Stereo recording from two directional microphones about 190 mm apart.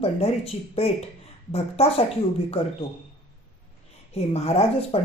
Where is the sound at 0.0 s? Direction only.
30° left (ahead or behind).